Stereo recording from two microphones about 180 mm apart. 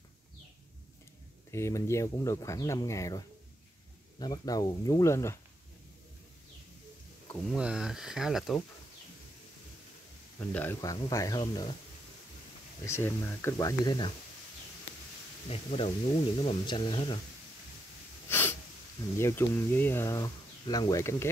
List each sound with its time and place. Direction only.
1.5 s speech: 15° left (ahead or behind)
7.5 s speech: 5° right (ahead or behind)
10.4 s speech: 10° left (ahead or behind)
12.8 s speech: 15° left (ahead or behind)
15.4 s speech: 35° left (ahead or behind)
18.3 s sneeze: 10° left (ahead or behind)
19.1 s speech: 15° left (ahead or behind)